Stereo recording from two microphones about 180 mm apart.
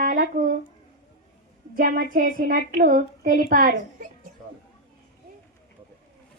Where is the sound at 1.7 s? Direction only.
50° right (ahead or behind).